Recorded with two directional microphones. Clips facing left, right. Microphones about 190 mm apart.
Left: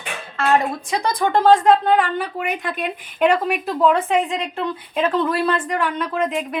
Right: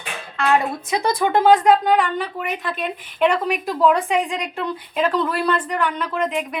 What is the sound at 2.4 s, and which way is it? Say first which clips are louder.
A woman's voice: left 1 dB; 10° left (ahead or behind).